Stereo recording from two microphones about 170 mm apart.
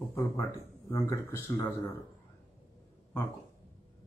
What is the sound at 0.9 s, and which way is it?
Speech, 15° left (ahead or behind).